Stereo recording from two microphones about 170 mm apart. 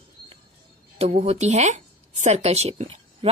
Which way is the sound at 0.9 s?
35° right (ahead or behind).